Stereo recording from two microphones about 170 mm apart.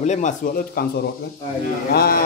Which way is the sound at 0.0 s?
45° left (ahead or behind).